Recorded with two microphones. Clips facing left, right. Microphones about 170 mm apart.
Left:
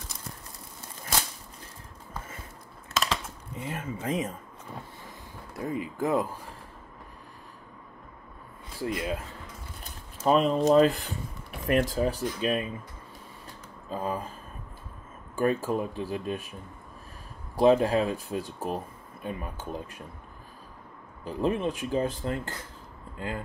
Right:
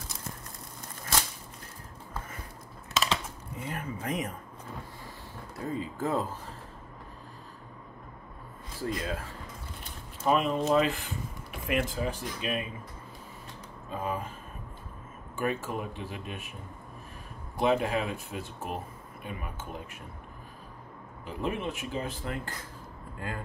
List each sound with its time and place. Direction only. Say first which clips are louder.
2.9 s a sound: even; centre (ahead or behind)
3.5 s speech: left 2 dB; 25° left (ahead or behind)
5.6 s speech: left 3 dB; 15° left (ahead or behind)
8.7 s speech: left 2 dB; 15° left (ahead or behind)
10.2 s speech: left 4 dB; 35° left (ahead or behind)
13.8 s speech: left 2 dB; 35° left (ahead or behind)
15.3 s speech: left 6 dB; 35° left (ahead or behind)
17.6 s speech: left 6 dB; 35° left (ahead or behind)
21.2 s speech: left 6 dB; 35° left (ahead or behind)